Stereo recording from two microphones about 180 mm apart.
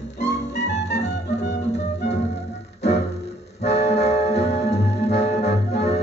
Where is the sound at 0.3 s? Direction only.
75° left (ahead or behind).